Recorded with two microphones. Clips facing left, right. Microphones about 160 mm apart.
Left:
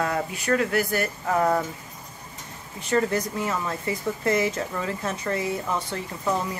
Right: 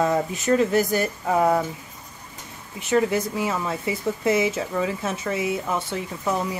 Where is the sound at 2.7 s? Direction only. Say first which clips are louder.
Right 2 dB; 10° right (ahead or behind).